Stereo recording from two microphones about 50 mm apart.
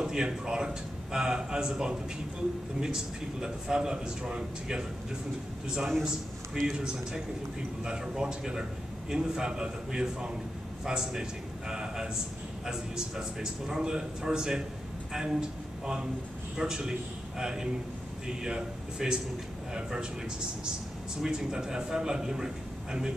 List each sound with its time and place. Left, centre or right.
0.0 s a man's voice: centre
5.8 s a man's voice: centre
6.7 s a man's voice: centre
15.8 s a man's voice: centre
21.2 s a man's voice: centre